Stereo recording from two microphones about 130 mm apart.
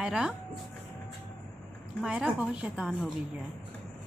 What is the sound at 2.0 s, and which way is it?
A woman's voice, 5° right (ahead or behind).